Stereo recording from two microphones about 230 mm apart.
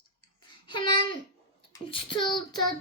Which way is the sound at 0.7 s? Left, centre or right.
Left.